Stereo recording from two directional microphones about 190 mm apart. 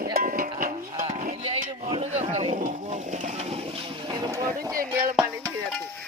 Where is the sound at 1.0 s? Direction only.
35° right (ahead or behind); by 4.8 s 15° right (ahead or behind).